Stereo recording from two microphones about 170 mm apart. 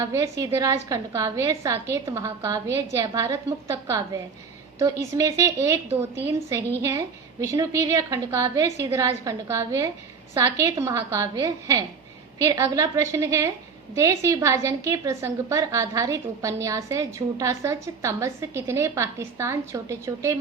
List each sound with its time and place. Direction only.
0.0 s a woman's voice: 20° right (ahead or behind)
7.4 s a woman's voice: 20° right (ahead or behind)